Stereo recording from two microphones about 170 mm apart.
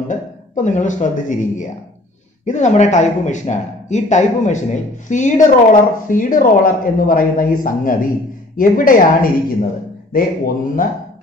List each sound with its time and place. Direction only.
0.1 s speech: 45° left (ahead or behind)